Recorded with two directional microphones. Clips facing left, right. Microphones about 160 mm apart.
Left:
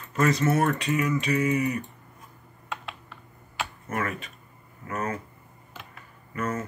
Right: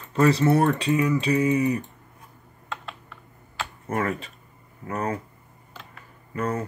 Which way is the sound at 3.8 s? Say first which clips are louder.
Right 5 dB; 30° right (ahead or behind).